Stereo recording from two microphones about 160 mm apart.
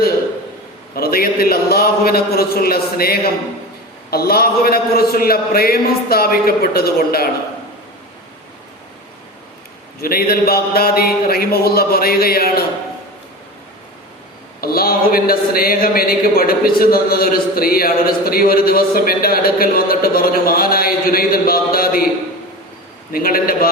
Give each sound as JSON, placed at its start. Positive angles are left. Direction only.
{"t": 0.9, "sound": "speech", "side_deg": 70}
{"t": 10.0, "sound": "speech", "side_deg": 70}
{"t": 14.6, "sound": "speech", "side_deg": 70}
{"t": 23.1, "sound": "speech", "side_deg": 65}